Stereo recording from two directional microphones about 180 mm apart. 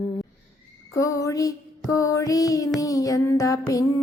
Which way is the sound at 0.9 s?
20° left (ahead or behind).